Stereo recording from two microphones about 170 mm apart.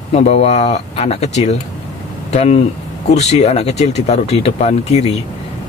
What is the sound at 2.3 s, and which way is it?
Speech, 40° left (ahead or behind).